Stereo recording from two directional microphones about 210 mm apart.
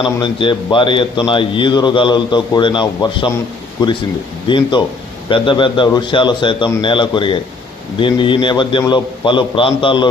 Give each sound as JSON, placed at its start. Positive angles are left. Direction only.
{"t": 0.0, "sound": "a man's voice", "side_deg": 25}